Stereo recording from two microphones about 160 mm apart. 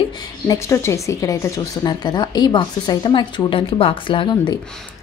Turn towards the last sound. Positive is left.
turn(degrees=30)  # may be behind; listen again after turning